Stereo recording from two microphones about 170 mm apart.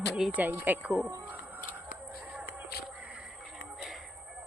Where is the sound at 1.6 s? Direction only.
55° left (ahead or behind).